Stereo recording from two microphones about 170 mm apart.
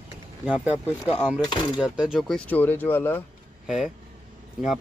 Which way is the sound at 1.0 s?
5° left (ahead or behind).